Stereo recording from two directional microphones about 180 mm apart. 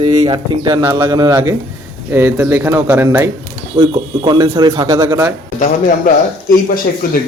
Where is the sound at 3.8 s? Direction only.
25° right (ahead or behind).